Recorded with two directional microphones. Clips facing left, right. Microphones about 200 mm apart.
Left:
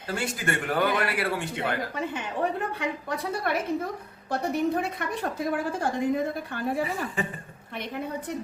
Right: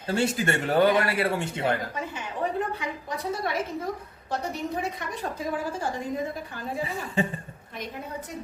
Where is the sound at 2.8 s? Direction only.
60° left (ahead or behind).